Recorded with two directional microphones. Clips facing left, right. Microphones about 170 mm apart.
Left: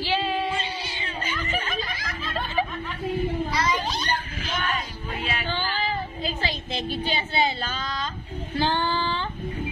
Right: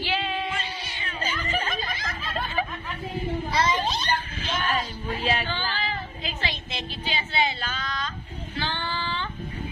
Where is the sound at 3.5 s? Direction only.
25° right (ahead or behind).